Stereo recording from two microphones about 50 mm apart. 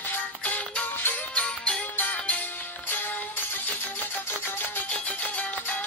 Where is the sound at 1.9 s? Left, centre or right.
Left.